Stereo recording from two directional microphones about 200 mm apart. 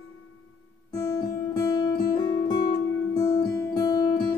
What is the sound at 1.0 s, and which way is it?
Guitar, 20° left (ahead or behind).